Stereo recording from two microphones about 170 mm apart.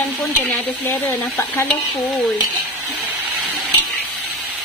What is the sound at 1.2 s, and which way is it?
Stir, centre (ahead or behind).